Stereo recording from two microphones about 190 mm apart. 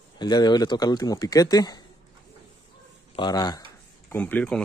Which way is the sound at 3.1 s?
20° left (ahead or behind).